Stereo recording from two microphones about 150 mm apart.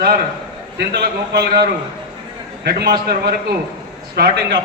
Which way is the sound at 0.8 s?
90° right.